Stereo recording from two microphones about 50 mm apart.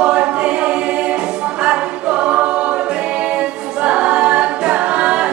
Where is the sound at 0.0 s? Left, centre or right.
Centre.